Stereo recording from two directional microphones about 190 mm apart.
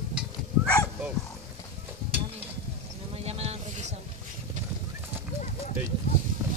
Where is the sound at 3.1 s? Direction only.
35° right (ahead or behind).